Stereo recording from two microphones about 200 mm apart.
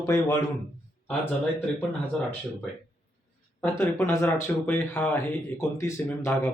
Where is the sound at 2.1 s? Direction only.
5° left (ahead or behind).